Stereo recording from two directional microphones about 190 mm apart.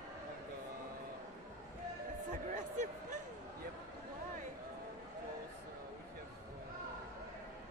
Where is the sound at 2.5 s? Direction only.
40° right (ahead or behind).